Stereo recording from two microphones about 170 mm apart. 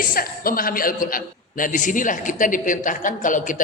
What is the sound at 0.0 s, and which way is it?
A man's voice, 55° left (ahead or behind).